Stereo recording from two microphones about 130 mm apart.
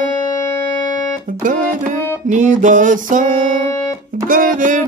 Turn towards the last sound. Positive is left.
turn(degrees=-90)